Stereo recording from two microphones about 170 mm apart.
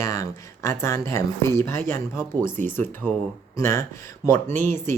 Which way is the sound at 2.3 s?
25° right (ahead or behind).